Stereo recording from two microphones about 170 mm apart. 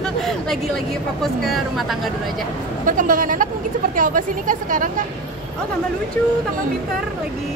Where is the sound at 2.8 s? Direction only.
55° right (ahead or behind).